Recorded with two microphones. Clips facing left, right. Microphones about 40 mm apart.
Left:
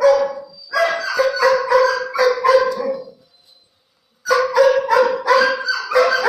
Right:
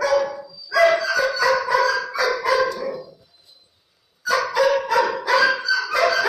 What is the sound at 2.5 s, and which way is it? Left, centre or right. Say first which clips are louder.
Dog: left 5 dB; left.